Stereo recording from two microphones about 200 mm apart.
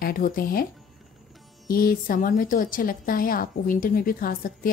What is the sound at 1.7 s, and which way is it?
A woman's voice, 45° left (ahead or behind).